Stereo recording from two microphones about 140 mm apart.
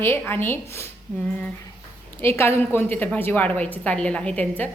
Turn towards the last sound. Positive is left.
turn(degrees=10)  # may be behind; listen again after turning